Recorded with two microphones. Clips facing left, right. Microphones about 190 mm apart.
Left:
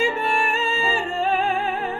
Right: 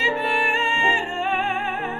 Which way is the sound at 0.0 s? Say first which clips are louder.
Left 1 dB; 45° left (ahead or behind).